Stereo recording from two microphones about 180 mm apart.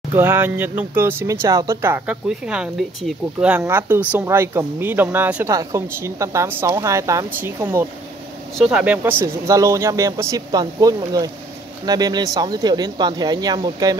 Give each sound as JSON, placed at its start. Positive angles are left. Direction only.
{"t": 0.1, "sound": "speech", "side_deg": -10}